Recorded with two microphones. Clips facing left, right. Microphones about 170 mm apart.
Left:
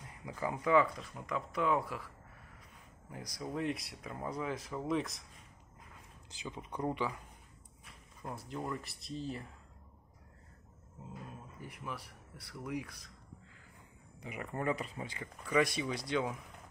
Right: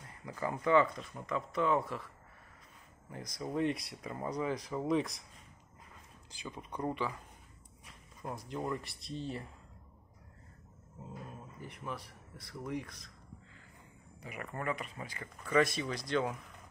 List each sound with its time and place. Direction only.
0.2 s speech: 10° left (ahead or behind)
3.1 s speech: 10° left (ahead or behind)
6.3 s speech: 15° left (ahead or behind)
8.4 s speech: centre (ahead or behind)
11.6 s speech: 5° left (ahead or behind)
14.2 s speech: 25° left (ahead or behind)
15.4 s speech: 10° left (ahead or behind)